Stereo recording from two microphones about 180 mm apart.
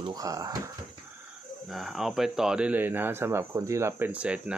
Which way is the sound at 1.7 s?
Centre (ahead or behind).